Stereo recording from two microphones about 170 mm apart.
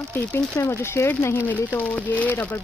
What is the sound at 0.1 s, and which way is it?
Speech, 15° left (ahead or behind).